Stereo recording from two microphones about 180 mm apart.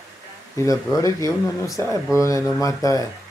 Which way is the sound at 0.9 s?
20° left (ahead or behind).